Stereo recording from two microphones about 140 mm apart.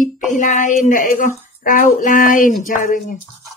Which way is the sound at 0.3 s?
65° left (ahead or behind).